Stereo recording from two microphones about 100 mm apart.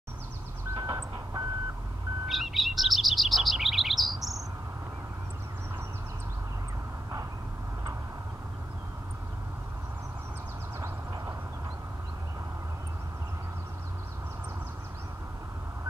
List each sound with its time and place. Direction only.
0.7 s vehicle: 45° right (ahead or behind)
2.2 s chirp: centre (ahead or behind)